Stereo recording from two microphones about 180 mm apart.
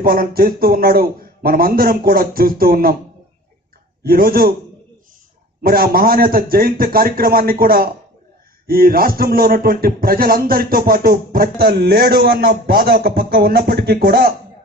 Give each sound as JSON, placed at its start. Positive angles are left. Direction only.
{"t": 0.0, "sound": "speech", "side_deg": -55}
{"t": 4.0, "sound": "speech", "side_deg": -55}
{"t": 5.6, "sound": "speech", "side_deg": -55}